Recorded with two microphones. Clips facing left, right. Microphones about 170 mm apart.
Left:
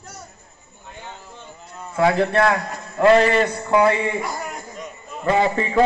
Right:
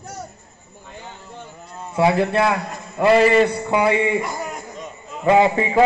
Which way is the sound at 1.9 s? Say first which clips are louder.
Right 1 dB; 10° right (ahead or behind).